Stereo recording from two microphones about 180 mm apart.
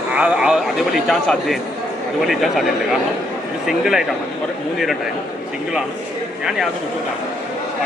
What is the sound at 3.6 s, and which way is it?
Speech, centre (ahead or behind).